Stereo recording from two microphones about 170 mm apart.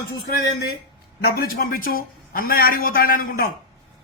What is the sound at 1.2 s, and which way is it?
A man's voice, 60° left (ahead or behind).